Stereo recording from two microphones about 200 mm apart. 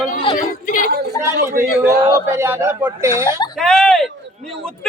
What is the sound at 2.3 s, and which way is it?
A man's voice, 10° right (ahead or behind).